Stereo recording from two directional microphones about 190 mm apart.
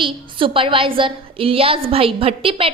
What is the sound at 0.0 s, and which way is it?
A woman's voice, 25° right (ahead or behind).